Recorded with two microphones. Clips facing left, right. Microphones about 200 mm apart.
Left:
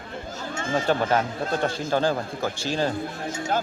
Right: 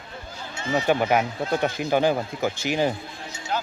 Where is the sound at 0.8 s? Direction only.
10° right (ahead or behind).